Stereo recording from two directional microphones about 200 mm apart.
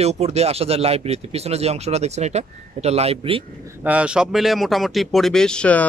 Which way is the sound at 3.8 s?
5° right (ahead or behind).